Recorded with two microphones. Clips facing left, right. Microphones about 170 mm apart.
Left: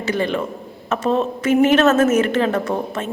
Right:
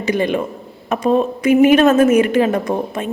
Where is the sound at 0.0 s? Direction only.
15° right (ahead or behind).